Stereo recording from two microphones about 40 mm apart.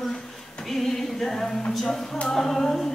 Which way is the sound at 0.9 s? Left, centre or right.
Centre.